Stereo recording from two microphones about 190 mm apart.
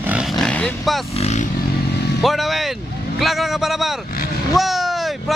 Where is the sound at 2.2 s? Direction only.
Centre (ahead or behind).